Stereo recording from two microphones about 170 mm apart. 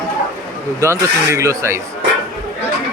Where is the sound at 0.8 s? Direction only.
15° right (ahead or behind).